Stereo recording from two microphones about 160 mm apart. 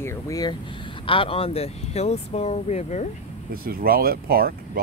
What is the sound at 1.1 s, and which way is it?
Speech, 35° left (ahead or behind).